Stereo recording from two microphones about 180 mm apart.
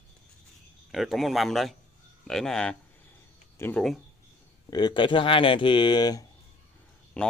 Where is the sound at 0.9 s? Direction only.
Centre (ahead or behind).